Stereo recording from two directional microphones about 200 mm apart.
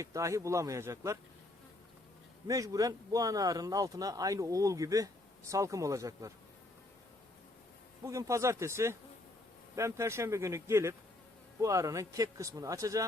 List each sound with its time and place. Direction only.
0.0 s speech: 15° right (ahead or behind)
2.5 s speech: 15° right (ahead or behind)
8.0 s speech: 15° right (ahead or behind)